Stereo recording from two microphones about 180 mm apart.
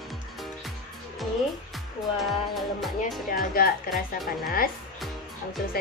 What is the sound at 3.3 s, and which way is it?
Speech, 55° left (ahead or behind).